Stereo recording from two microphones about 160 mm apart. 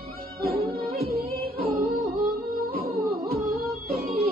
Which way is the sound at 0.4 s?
70° right (ahead or behind).